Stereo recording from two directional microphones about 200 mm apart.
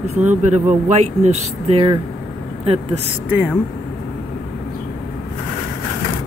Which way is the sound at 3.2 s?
10° right (ahead or behind).